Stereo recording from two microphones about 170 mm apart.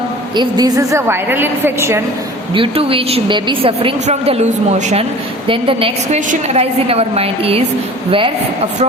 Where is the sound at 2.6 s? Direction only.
35° right (ahead or behind).